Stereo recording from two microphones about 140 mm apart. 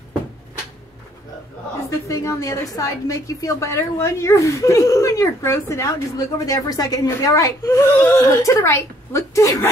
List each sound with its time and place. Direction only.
2.0 s a woman's voice: 25° left (ahead or behind)